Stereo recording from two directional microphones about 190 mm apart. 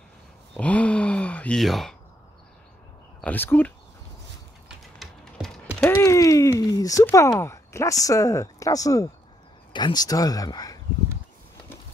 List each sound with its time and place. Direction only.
0.6 s sigh: 5° left (ahead or behind)
3.2 s speech: 10° left (ahead or behind)
4.6 s typing: centre (ahead or behind)
5.9 s a sound: 15° left (ahead or behind)
6.7 s speech: 20° left (ahead or behind)